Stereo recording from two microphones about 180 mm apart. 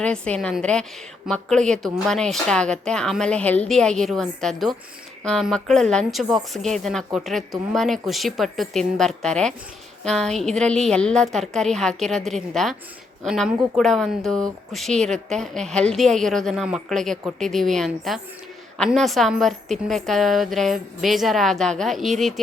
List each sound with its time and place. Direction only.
0.0 s a woman's voice: 5° left (ahead or behind)